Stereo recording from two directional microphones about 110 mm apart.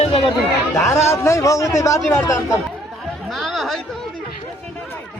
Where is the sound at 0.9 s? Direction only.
25° left (ahead or behind).